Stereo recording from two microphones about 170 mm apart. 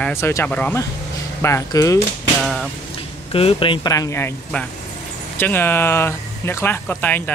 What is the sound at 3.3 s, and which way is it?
Speech, 35° left (ahead or behind).